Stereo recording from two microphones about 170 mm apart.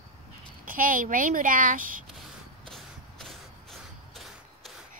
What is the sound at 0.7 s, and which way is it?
A woman's voice, 55° right (ahead or behind).